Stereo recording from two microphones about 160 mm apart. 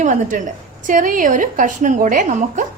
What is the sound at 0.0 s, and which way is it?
A woman's voice, 50° right (ahead or behind).